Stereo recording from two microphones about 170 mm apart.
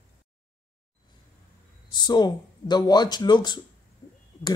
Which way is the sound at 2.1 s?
25° left (ahead or behind).